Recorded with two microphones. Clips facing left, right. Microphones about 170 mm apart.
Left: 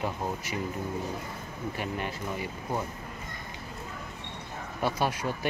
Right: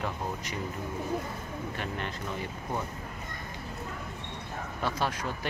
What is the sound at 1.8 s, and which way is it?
Speech, 10° left (ahead or behind).